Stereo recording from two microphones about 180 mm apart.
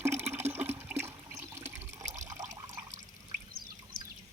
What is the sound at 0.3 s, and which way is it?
Toilet flush, 10° right (ahead or behind).